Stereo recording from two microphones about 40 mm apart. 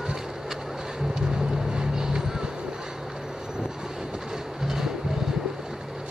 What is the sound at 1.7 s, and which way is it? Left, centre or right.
Boat, centre.